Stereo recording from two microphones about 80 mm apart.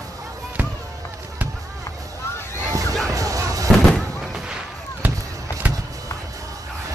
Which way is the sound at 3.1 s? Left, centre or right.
Right.